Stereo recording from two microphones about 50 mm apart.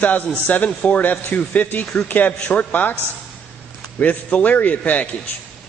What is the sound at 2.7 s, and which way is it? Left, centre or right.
Speech, left.